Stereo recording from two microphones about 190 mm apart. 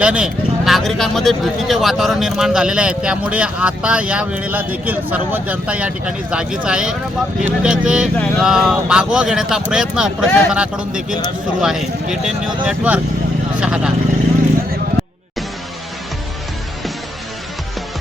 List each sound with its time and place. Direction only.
0.0 s speech: 5° right (ahead or behind)